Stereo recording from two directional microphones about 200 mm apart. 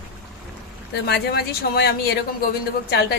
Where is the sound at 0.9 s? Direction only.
55° left (ahead or behind).